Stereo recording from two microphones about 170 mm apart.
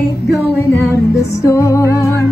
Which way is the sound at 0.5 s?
15° left (ahead or behind).